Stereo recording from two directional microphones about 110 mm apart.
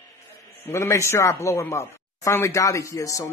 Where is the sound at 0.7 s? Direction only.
25° left (ahead or behind).